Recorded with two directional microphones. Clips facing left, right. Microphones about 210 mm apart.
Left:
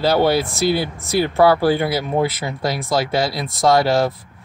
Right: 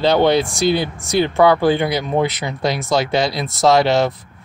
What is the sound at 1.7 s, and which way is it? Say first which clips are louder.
Speech: right 1 dB; 20° right (ahead or behind).